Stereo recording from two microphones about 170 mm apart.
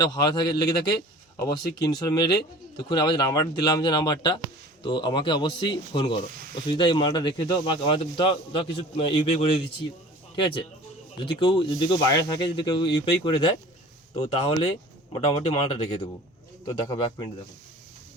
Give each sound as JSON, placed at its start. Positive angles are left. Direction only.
{"t": 0.0, "sound": "speech", "side_deg": 25}
{"t": 16.9, "sound": "speech", "side_deg": 25}